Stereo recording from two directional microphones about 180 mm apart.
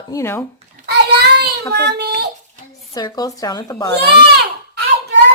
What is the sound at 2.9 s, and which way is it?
Speech, 20° left (ahead or behind).